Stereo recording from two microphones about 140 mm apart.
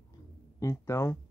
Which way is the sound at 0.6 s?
20° left (ahead or behind).